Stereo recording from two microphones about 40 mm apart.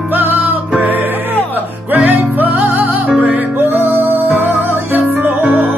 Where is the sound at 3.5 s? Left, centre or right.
Right.